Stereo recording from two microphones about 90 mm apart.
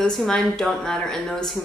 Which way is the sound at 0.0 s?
5° left (ahead or behind).